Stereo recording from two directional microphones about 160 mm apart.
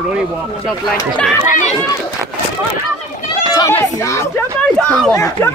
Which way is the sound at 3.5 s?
20° left (ahead or behind).